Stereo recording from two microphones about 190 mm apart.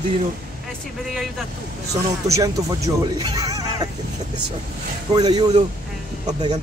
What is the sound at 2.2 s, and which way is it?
Speech, 15° right (ahead or behind).